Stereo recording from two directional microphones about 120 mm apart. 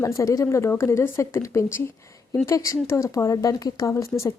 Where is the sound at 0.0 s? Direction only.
25° left (ahead or behind).